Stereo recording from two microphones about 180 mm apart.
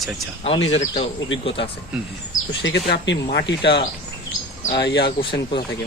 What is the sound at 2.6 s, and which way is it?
Speech, 85° left.